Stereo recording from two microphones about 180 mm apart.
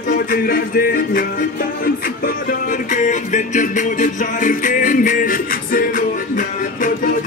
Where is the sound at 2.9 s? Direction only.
45° left (ahead or behind).